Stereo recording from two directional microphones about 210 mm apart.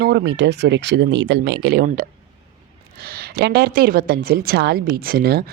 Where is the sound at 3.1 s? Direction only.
50° right (ahead or behind).